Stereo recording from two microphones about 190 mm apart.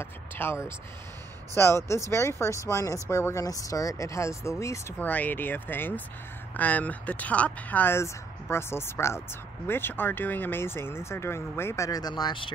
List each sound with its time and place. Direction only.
0.0 s speech: 15° left (ahead or behind)